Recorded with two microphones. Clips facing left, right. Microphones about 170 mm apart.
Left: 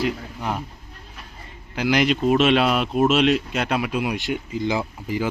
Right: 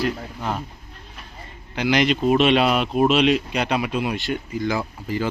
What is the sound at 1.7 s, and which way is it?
Speech, 5° left (ahead or behind).